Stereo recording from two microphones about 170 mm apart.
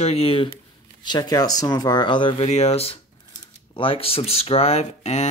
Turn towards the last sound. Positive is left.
turn(degrees=40)  # may be behind; listen again after turning